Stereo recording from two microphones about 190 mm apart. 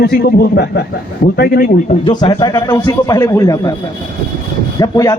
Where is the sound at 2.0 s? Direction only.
25° left (ahead or behind).